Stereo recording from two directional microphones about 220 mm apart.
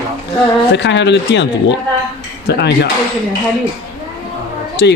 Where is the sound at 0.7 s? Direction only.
55° left (ahead or behind).